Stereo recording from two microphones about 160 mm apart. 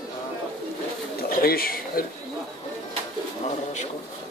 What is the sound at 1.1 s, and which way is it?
Pigeon, 65° left (ahead or behind).